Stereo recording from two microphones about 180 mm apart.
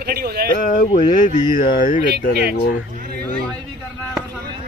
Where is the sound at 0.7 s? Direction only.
50° left (ahead or behind).